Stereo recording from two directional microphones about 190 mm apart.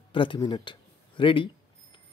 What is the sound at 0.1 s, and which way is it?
Speech, 25° left (ahead or behind).